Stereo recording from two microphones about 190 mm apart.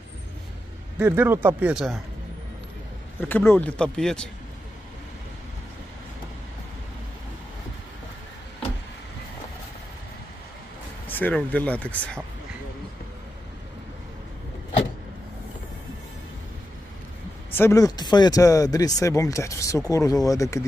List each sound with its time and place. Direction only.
0.9 s speech: 10° right (ahead or behind)
3.2 s speech: 10° left (ahead or behind)
11.1 s speech: 10° left (ahead or behind)
17.6 s speech: 15° left (ahead or behind)